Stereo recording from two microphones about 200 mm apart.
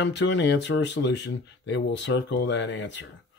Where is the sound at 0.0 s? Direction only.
60° left (ahead or behind).